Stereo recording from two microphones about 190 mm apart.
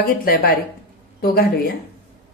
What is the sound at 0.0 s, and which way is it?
A woman's voice, 50° left (ahead or behind).